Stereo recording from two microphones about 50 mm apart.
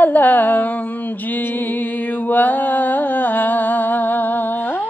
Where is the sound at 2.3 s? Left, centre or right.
Left.